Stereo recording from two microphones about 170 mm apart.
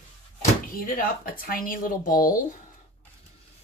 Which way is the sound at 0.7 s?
55° left (ahead or behind).